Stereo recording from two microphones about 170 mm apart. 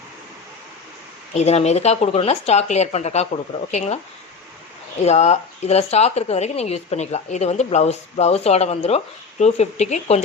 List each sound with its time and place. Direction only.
1.3 s a woman's voice: 40° left (ahead or behind)
5.0 s a woman's voice: 40° left (ahead or behind)